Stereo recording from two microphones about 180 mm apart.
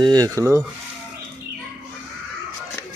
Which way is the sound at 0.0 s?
20° right (ahead or behind).